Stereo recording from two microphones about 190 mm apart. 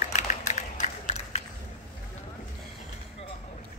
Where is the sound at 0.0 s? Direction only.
40° left (ahead or behind).